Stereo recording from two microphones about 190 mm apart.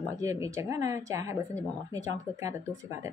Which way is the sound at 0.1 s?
15° right (ahead or behind).